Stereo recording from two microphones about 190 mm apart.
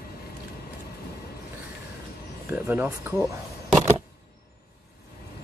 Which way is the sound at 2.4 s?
10° right (ahead or behind).